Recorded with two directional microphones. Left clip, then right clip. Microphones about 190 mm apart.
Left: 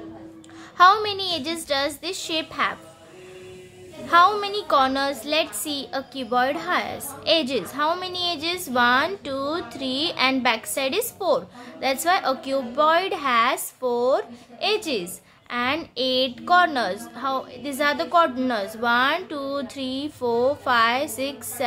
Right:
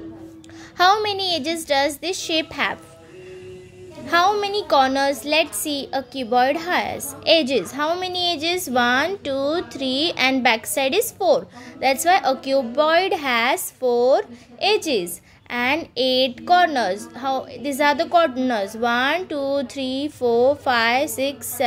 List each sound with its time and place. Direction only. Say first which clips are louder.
0.7 s a woman's voice: left 1 dB; 20° right (ahead or behind)
4.1 s a woman's voice: left 1 dB; 20° right (ahead or behind)